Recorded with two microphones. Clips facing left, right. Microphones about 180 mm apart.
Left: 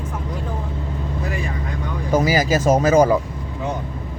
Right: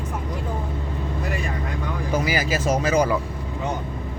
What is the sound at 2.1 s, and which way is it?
Speech, 40° left (ahead or behind).